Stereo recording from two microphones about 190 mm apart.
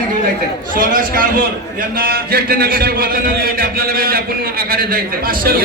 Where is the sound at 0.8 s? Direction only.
45° right (ahead or behind).